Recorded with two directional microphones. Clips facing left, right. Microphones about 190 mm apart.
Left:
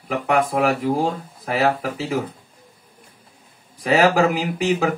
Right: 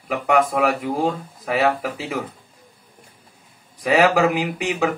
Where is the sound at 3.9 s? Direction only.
35° left (ahead or behind).